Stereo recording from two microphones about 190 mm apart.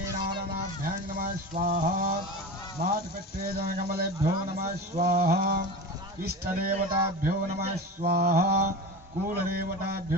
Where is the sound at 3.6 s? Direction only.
50° right (ahead or behind).